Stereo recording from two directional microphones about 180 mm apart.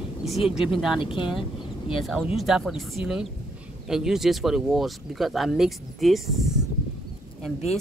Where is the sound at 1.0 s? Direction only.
30° left (ahead or behind).